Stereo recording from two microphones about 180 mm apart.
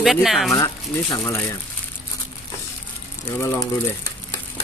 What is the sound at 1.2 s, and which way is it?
Speech, 10° left (ahead or behind).